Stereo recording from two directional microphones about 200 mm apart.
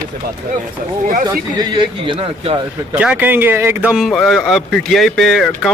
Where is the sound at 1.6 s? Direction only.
25° right (ahead or behind).